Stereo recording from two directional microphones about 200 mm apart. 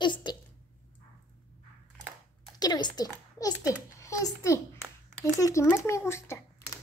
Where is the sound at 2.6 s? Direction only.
20° left (ahead or behind).